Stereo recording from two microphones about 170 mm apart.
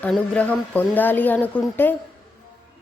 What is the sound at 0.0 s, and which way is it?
Speech, 10° left (ahead or behind).